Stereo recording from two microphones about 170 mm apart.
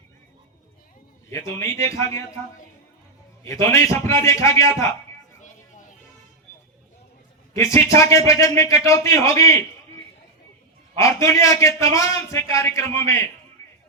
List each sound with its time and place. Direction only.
1.3 s a man's voice: 15° left (ahead or behind)
3.4 s a man's voice: 15° left (ahead or behind)
5.4 s a sound: 45° left (ahead or behind)
7.5 s a man's voice: 15° left (ahead or behind)
10.9 s a man's voice: 20° left (ahead or behind)